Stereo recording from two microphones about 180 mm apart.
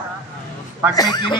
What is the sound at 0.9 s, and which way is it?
Speech, 20° left (ahead or behind).